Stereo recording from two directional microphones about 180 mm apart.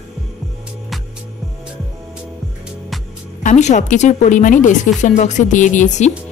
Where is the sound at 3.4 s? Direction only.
40° left (ahead or behind).